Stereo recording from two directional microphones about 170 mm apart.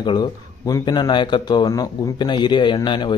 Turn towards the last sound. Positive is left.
turn(degrees=25)  # may be behind; listen again after turning